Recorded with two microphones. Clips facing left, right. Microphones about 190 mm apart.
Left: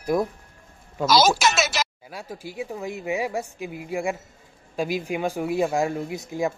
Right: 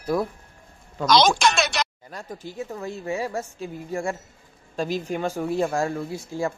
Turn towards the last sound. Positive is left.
turn(degrees=15)  # may be behind; listen again after turning